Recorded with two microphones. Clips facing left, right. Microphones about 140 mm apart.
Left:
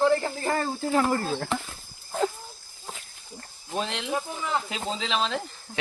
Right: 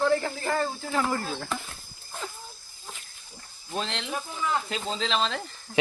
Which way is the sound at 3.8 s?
10° left (ahead or behind).